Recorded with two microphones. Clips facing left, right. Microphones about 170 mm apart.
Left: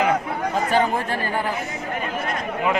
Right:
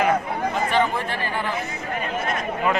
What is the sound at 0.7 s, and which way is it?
Chatter, 45° left (ahead or behind).